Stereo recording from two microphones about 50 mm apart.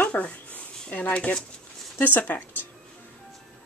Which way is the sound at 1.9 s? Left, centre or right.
Left.